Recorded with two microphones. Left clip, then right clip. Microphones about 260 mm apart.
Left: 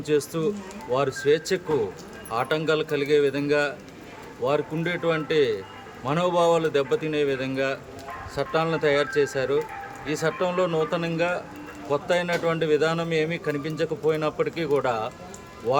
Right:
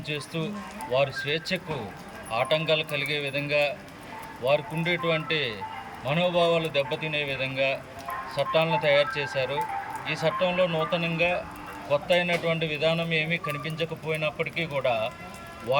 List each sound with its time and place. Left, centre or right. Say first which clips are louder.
0.1 s speech: left 9 dB; centre